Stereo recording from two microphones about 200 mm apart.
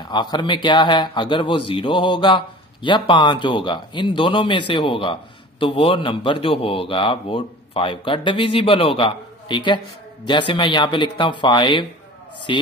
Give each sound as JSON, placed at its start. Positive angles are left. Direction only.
{"t": 0.1, "sound": "speech", "side_deg": 20}